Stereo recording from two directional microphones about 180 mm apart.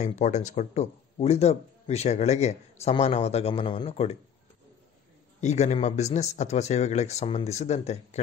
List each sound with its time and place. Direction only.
0.0 s speech: 40° left (ahead or behind)
5.4 s speech: 40° left (ahead or behind)